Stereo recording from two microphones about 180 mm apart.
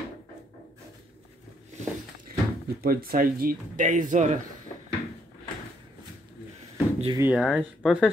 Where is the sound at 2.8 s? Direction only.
55° right (ahead or behind).